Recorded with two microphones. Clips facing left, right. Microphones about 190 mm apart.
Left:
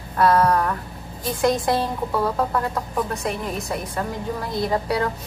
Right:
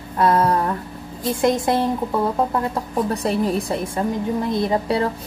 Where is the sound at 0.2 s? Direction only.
25° right (ahead or behind).